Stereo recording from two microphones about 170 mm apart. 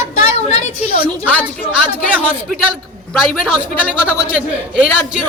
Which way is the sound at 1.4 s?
5° right (ahead or behind).